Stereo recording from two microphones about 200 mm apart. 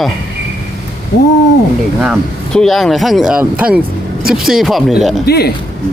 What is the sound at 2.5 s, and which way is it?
Speech, centre (ahead or behind).